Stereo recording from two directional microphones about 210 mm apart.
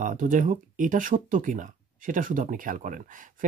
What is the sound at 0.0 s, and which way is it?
Speech, 40° right (ahead or behind).